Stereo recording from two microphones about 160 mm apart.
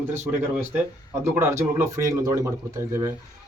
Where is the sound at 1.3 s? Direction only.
15° right (ahead or behind).